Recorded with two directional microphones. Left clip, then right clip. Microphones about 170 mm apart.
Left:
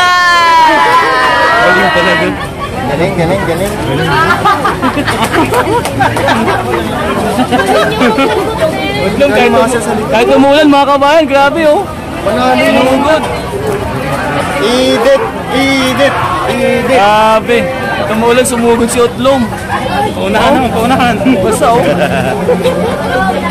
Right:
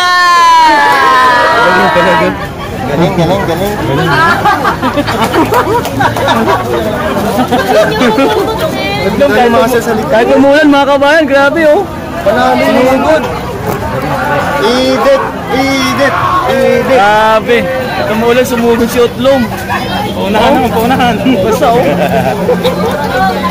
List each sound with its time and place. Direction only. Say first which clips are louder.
0.0 s a sound: right 1 dB; 45° right (ahead or behind)
9.3 s speech: right 1 dB; 15° right (ahead or behind)
10.1 s speech: even; 5° right (ahead or behind)
11.4 s speech: right 1 dB; 10° right (ahead or behind)
14.6 s speech: left 2 dB; centre (ahead or behind)
16.9 s speech: left 1 dB; 5° left (ahead or behind)
20.3 s speech: right 1 dB; centre (ahead or behind)